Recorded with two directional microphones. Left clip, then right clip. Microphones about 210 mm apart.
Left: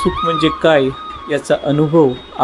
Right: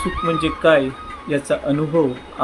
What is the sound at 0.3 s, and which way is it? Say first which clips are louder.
Speech: left 2 dB; 30° left (ahead or behind).